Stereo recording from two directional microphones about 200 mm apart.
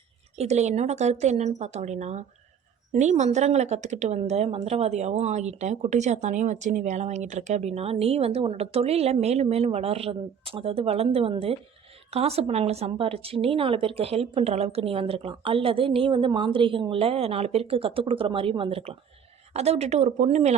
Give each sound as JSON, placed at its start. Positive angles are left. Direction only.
{"t": 0.3, "sound": "a woman's voice", "side_deg": -35}